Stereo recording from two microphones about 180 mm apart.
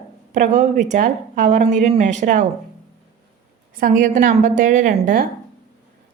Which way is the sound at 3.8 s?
45° right (ahead or behind).